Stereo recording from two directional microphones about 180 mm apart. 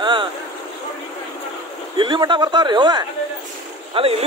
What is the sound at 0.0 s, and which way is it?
Boat, 25° right (ahead or behind).